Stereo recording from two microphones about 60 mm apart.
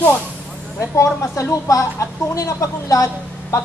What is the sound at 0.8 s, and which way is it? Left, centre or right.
Speech, left.